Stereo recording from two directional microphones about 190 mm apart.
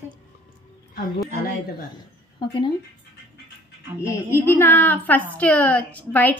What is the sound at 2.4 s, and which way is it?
Speech, 25° left (ahead or behind).